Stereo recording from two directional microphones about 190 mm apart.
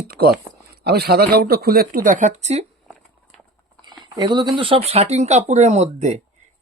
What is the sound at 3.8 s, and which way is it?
Speech, 25° right (ahead or behind).